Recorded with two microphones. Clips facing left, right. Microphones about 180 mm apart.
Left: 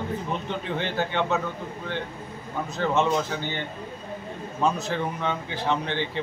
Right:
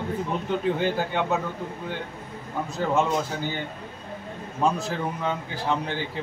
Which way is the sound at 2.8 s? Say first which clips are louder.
Left 1 dB; 5° right (ahead or behind).